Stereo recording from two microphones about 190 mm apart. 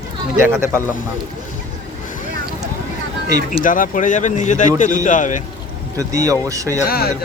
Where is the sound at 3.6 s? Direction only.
45° left (ahead or behind).